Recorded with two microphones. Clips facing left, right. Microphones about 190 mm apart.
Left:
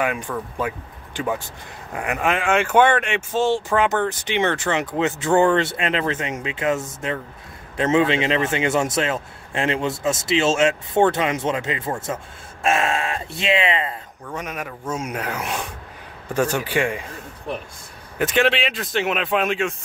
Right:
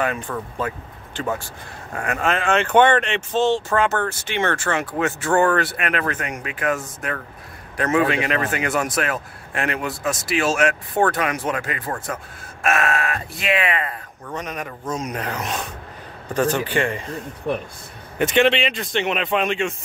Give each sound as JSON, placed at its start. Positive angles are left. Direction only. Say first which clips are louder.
{"t": 0.6, "sound": "a man's voice", "louder": "left 1 dB", "side_deg": 10}
{"t": 14.3, "sound": "speech", "louder": "right 1 dB", "side_deg": 5}
{"t": 18.1, "sound": "speech", "louder": "right 2 dB", "side_deg": 0}